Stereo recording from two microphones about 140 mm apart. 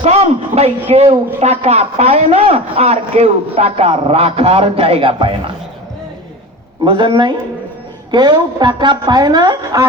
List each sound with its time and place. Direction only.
0.0 s a sound: 50° right (ahead or behind)
1.4 s a man's voice: 50° right (ahead or behind)
6.8 s speech: 35° right (ahead or behind)